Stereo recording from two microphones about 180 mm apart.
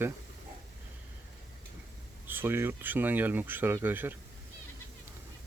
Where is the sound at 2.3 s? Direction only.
10° right (ahead or behind).